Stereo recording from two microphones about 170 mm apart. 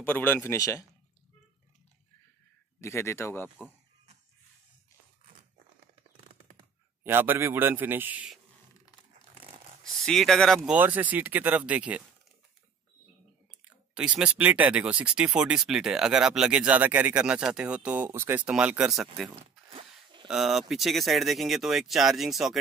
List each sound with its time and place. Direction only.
0.0 s speech: 10° left (ahead or behind)
2.8 s speech: 15° left (ahead or behind)
3.4 s speech: 5° right (ahead or behind)
7.0 s speech: 10° right (ahead or behind)
10.0 s speech: centre (ahead or behind)
13.9 s speech: 5° right (ahead or behind)
19.7 s a sound: 30° right (ahead or behind)
20.2 s speech: centre (ahead or behind)